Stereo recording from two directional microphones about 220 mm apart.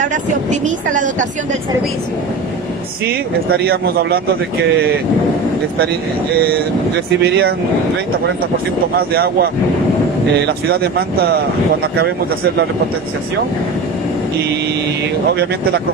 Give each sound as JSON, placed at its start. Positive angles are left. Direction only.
{"t": 0.1, "sound": "a woman's voice", "side_deg": -35}
{"t": 3.6, "sound": "speech", "side_deg": -45}
{"t": 7.2, "sound": "speech", "side_deg": -50}
{"t": 9.1, "sound": "speech", "side_deg": -45}